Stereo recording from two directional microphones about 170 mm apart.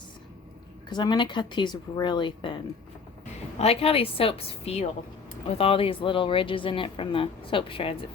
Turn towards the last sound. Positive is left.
turn(degrees=30)  # may be behind; listen again after turning